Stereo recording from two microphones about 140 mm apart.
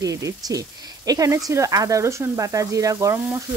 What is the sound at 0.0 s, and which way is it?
Frying, 25° right (ahead or behind).